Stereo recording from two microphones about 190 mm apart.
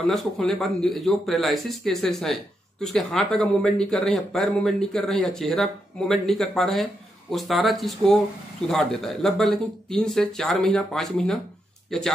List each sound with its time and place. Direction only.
0.0 s speech: centre (ahead or behind)